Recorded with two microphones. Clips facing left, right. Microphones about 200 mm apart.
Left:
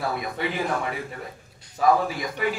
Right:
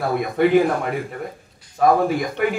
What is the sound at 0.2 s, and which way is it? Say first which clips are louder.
A man's voice: right 12 dB; 55° right (ahead or behind).